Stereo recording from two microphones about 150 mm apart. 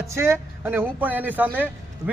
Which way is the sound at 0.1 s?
15° right (ahead or behind).